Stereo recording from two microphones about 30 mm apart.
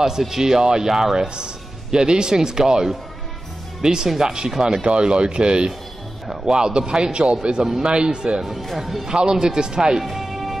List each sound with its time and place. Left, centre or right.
0.2 s speech: centre
1.3 s speech: right
4.8 s speech: right
8.5 s speech: centre
9.1 s speech: right
10.0 s music: centre